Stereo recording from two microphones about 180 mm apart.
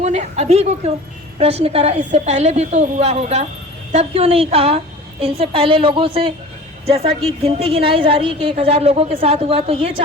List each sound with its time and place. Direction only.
0.0 s a woman's voice: 40° right (ahead or behind)